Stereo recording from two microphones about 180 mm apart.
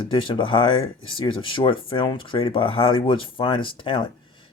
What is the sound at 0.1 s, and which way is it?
Speech, 25° left (ahead or behind).